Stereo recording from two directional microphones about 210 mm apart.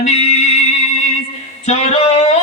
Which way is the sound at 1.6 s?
30° left (ahead or behind).